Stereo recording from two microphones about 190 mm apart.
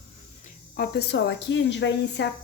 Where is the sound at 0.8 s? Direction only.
60° left (ahead or behind).